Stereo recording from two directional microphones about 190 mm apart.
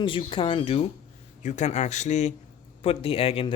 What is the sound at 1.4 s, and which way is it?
A man's voice, 40° left (ahead or behind).